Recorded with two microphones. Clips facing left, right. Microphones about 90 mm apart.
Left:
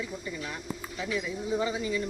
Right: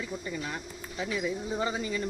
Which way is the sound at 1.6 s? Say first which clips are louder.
Left 1 dB; 40° right (ahead or behind).